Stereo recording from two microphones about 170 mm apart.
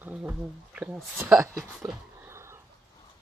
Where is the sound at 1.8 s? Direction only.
15° right (ahead or behind).